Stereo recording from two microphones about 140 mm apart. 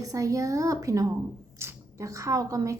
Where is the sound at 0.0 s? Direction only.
25° right (ahead or behind).